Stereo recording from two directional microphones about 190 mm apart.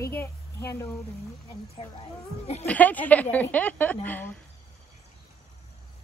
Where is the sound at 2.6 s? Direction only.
10° left (ahead or behind).